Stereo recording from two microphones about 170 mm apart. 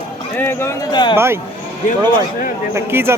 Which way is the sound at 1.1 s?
15° right (ahead or behind).